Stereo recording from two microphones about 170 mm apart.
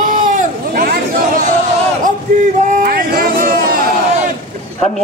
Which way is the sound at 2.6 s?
50° right (ahead or behind).